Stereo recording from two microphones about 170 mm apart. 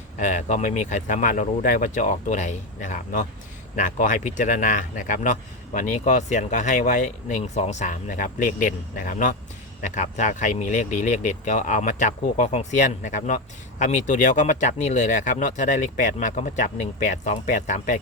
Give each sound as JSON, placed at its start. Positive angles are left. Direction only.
{"t": 0.2, "sound": "speech", "side_deg": 45}